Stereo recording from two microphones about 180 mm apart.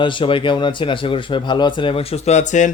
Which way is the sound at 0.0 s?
25° left (ahead or behind).